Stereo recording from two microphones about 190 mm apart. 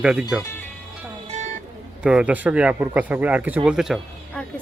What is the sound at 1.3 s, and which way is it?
Music, 35° right (ahead or behind).